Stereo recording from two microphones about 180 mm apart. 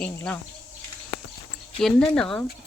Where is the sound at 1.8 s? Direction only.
5° left (ahead or behind).